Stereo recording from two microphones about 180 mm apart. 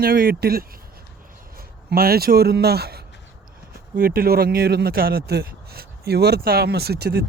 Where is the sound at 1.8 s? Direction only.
60° right (ahead or behind).